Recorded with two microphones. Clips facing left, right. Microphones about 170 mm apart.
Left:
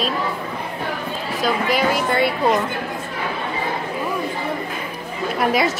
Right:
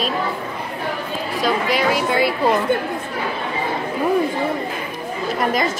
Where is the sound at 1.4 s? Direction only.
Centre (ahead or behind).